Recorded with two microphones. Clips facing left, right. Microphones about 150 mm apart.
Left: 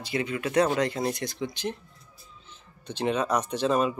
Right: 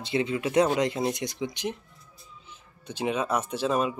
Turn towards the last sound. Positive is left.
turn(degrees=-5)  # may be behind; listen again after turning